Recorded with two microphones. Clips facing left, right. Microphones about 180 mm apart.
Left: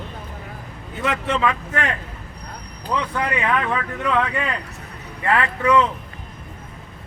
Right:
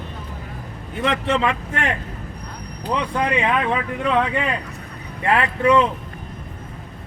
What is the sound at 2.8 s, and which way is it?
Speech, 20° right (ahead or behind).